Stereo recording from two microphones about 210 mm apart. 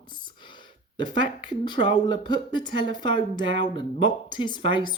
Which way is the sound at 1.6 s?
20° left (ahead or behind).